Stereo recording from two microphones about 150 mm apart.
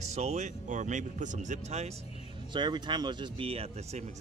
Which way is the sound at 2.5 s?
30° right (ahead or behind).